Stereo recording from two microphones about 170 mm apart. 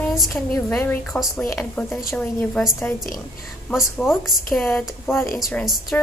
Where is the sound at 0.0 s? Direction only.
Centre (ahead or behind).